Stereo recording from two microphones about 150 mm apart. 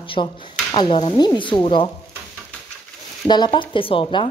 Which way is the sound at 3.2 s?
30° left (ahead or behind).